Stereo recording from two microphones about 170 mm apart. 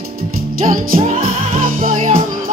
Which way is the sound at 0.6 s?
55° right (ahead or behind).